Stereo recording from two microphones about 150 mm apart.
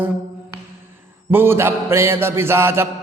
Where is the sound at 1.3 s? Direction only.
15° right (ahead or behind).